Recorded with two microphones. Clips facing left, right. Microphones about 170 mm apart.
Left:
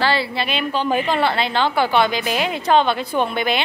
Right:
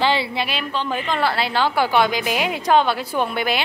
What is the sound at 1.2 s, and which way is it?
A woman's voice, 5° right (ahead or behind).